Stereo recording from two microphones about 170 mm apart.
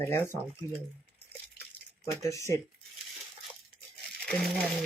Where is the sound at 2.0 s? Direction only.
15° left (ahead or behind).